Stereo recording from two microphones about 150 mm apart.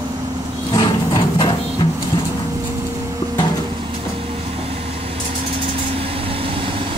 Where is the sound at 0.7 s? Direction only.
35° left (ahead or behind).